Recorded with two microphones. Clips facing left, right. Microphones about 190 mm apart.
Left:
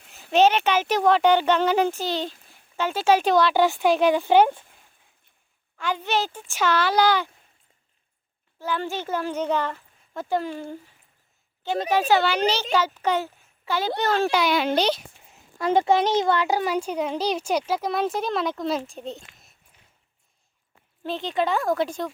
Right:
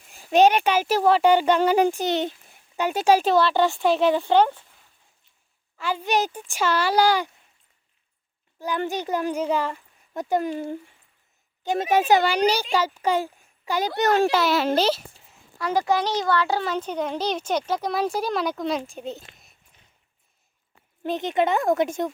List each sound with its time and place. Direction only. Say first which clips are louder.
0.1 s speech: right 1 dB; 10° right (ahead or behind)
4.3 s speech: left 1 dB; 15° left (ahead or behind)
5.7 s speech: right 1 dB; 5° right (ahead or behind)
8.5 s speech: right 2 dB; 15° right (ahead or behind)
11.8 s a child's voice: right 1 dB; 20° right (ahead or behind)
14.3 s speech: right 1 dB; 5° right (ahead or behind)
15.3 s speech: left 4 dB; 25° left (ahead or behind); by 19.2 s centre (ahead or behind)
21.0 s speech: right 3 dB; 15° right (ahead or behind)